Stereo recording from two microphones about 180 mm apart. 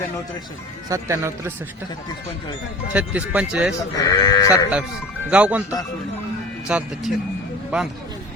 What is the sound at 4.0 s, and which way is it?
Speech, 20° left (ahead or behind).